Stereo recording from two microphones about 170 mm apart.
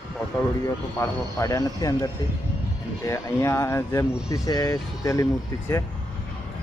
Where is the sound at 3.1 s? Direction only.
15° left (ahead or behind).